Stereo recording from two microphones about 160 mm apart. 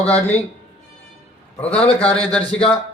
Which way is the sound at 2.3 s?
5° left (ahead or behind).